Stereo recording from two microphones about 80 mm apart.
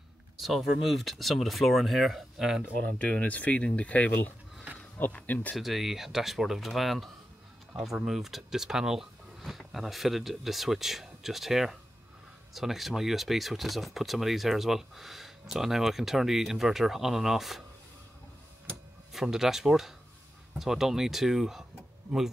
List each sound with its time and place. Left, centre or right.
0.4 s speech: centre
3.0 s speech: centre
5.6 s speech: centre
19.2 s speech: centre